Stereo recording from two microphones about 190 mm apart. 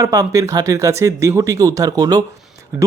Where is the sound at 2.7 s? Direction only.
5° right (ahead or behind).